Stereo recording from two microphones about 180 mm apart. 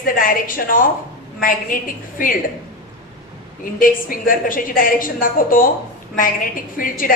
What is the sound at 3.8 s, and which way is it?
A woman's voice, 50° left (ahead or behind).